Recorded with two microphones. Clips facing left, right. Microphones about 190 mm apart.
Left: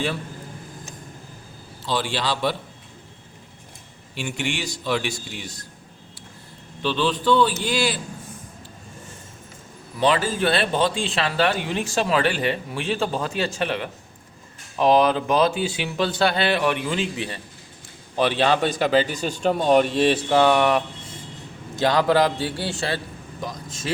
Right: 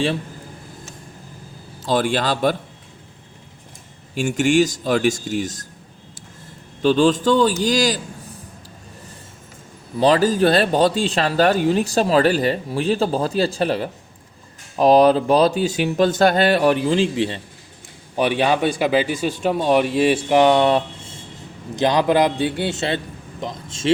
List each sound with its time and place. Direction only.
1.8 s speech: 45° right (ahead or behind)
4.1 s speech: 45° right (ahead or behind)
6.8 s speech: 45° right (ahead or behind)
10.0 s speech: 40° right (ahead or behind)
18.2 s a man's voice: 15° right (ahead or behind)